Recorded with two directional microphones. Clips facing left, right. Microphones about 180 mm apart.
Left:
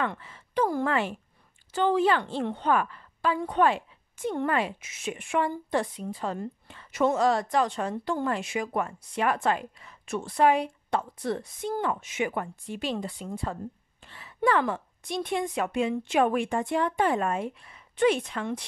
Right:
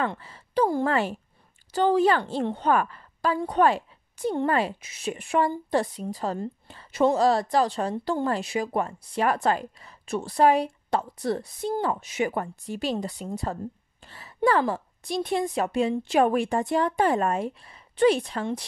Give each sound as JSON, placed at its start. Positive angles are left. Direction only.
{"t": 0.0, "sound": "a woman's voice", "side_deg": -35}